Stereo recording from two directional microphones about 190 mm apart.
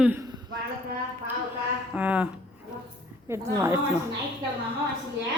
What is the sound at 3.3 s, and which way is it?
Speech, 15° right (ahead or behind).